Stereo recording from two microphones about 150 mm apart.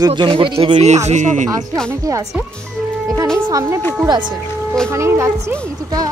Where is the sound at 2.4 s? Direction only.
5° left (ahead or behind).